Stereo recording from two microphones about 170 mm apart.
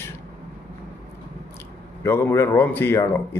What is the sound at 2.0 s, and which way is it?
Speech, 15° left (ahead or behind).